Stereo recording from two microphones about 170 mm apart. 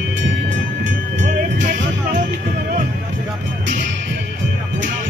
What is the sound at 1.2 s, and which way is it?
Music, 45° right (ahead or behind).